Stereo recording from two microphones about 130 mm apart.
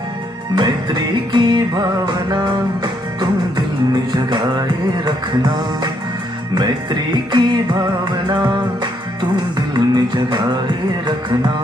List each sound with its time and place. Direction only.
0.5 s music: 35° right (ahead or behind)
7.3 s music: 35° right (ahead or behind)